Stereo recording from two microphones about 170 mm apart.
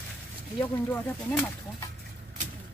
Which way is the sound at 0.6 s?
10° left (ahead or behind).